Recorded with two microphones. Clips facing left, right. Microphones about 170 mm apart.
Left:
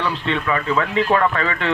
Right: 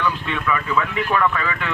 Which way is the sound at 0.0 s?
30° left (ahead or behind).